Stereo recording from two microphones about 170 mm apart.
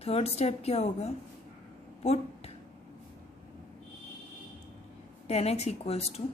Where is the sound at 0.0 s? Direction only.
35° left (ahead or behind).